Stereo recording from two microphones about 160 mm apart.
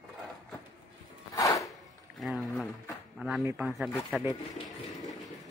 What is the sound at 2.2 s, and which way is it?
Pour, centre (ahead or behind).